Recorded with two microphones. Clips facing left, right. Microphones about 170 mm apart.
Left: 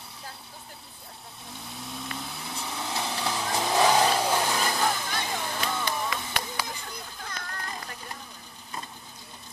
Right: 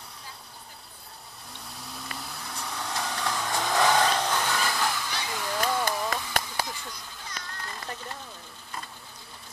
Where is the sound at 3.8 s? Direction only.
10° left (ahead or behind).